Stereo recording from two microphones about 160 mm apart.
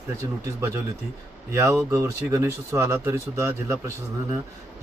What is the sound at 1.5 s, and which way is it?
Speech, 15° right (ahead or behind).